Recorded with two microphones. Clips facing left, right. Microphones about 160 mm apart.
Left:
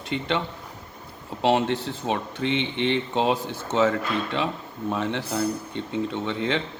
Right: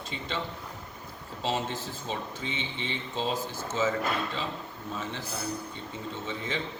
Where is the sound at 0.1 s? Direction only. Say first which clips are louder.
Left 9 dB; 65° left (ahead or behind).